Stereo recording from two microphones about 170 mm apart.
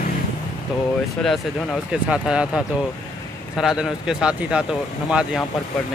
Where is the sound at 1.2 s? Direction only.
Centre (ahead or behind).